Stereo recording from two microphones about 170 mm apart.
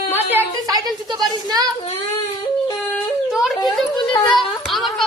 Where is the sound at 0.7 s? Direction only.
25° right (ahead or behind).